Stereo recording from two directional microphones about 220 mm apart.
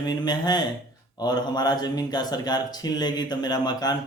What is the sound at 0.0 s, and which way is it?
Speech, 20° left (ahead or behind).